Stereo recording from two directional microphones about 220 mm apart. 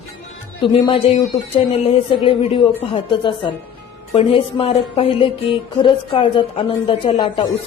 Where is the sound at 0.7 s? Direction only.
25° left (ahead or behind).